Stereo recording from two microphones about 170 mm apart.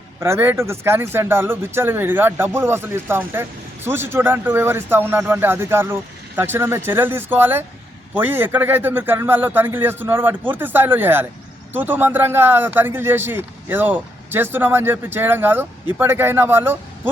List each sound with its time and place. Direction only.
0.2 s speech: 15° right (ahead or behind)